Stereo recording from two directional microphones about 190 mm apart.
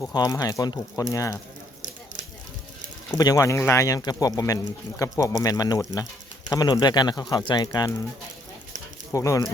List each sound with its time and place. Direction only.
0.0 s speech: 20° left (ahead or behind)
3.2 s speech: 20° left (ahead or behind)
9.1 s speech: 15° left (ahead or behind)